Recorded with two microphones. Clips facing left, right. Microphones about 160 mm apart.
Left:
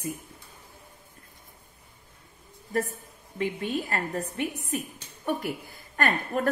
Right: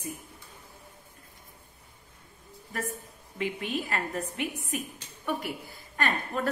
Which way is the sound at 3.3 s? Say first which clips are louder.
Left 3 dB; 35° left (ahead or behind).